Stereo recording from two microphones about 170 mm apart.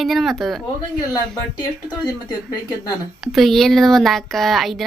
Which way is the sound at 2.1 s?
20° left (ahead or behind).